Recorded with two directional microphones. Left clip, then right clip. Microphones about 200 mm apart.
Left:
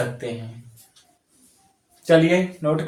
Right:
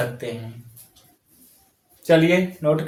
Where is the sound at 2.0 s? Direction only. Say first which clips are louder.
Even; 30° right (ahead or behind).